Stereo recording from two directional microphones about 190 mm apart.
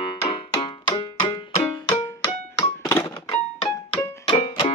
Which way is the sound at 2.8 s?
15° left (ahead or behind).